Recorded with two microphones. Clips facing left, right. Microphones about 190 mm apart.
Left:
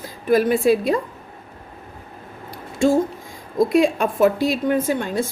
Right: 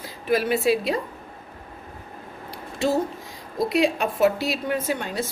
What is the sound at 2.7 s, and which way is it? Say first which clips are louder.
Speech: left 6 dB; 50° left (ahead or behind).